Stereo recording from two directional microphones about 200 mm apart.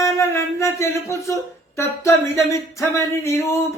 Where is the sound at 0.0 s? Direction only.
15° left (ahead or behind).